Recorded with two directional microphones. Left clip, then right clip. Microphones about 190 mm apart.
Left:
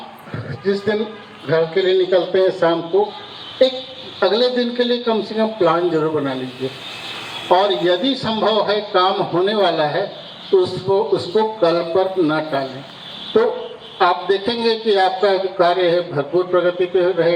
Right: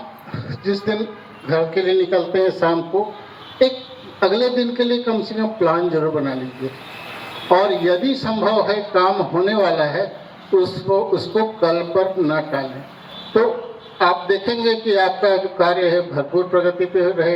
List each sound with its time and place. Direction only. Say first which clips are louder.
0.6 s a man's voice: left 2 dB; 40° left (ahead or behind)
4.2 s a man's voice: left 1 dB; 35° left (ahead or behind)
7.4 s a man's voice: even; 35° left (ahead or behind)